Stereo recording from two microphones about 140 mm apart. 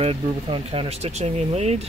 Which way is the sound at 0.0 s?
45° right (ahead or behind).